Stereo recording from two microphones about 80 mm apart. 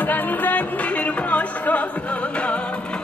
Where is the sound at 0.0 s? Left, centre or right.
Left.